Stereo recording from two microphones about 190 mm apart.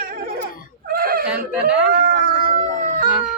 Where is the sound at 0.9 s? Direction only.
50° right (ahead or behind).